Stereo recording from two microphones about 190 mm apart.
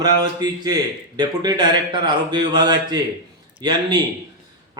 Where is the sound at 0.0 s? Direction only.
20° right (ahead or behind).